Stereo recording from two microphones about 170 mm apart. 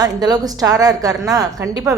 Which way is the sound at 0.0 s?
25° right (ahead or behind).